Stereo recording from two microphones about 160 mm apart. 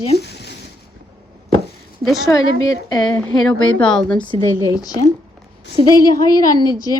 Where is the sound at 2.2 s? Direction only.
20° left (ahead or behind).